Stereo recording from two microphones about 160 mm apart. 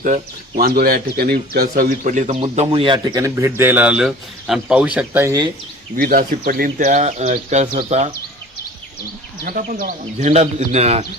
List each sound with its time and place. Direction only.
0.0 s speech: 60° right (ahead or behind); by 3.0 s 30° right (ahead or behind)
3.2 s a man's voice: 20° right (ahead or behind)
5.2 s speech: 20° right (ahead or behind)
6.0 s speech: 60° right (ahead or behind); by 8.1 s 45° right (ahead or behind)
9.4 s speech: 60° right (ahead or behind)
10.2 s speech: 45° right (ahead or behind)